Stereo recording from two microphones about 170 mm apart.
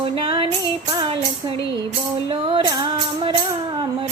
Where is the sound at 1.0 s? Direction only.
30° right (ahead or behind).